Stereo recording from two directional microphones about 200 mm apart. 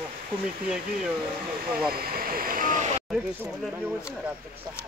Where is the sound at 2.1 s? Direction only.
45° right (ahead or behind).